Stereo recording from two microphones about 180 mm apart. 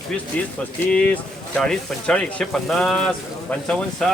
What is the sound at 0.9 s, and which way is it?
Speech, 5° left (ahead or behind).